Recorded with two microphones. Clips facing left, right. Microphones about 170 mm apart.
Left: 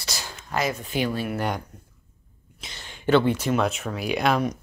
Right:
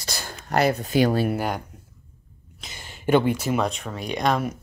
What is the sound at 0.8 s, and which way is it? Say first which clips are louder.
Speech: right 6 dB; 40° right (ahead or behind).